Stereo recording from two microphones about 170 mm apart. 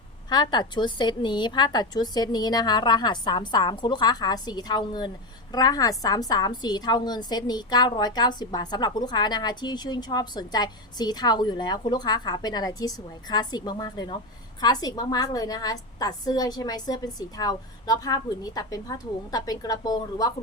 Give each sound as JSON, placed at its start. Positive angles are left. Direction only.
{"t": 0.3, "sound": "a woman's voice", "side_deg": 25}